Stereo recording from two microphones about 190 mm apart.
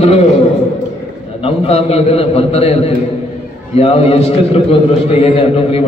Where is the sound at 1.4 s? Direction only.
30° left (ahead or behind).